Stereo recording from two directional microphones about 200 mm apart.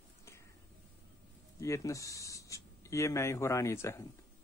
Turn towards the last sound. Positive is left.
turn(degrees=15)  # may be behind; listen again after turning